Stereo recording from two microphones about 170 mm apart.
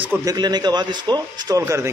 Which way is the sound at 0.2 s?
25° right (ahead or behind).